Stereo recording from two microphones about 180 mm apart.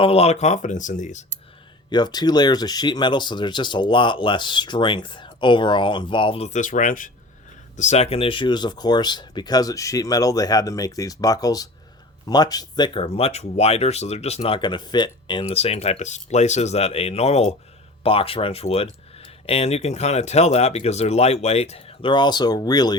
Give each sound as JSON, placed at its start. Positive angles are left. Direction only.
{"t": 0.0, "sound": "speech", "side_deg": 35}
{"t": 1.9, "sound": "speech", "side_deg": 25}